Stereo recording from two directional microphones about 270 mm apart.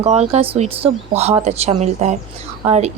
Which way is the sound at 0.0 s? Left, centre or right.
Right.